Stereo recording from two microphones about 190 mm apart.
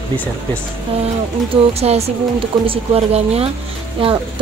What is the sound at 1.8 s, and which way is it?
Speech, 35° right (ahead or behind).